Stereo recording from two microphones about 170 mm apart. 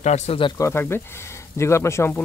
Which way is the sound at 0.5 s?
15° left (ahead or behind).